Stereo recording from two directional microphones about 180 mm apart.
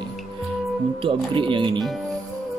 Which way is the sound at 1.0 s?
30° right (ahead or behind).